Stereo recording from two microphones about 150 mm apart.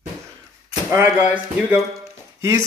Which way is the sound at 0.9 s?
15° right (ahead or behind).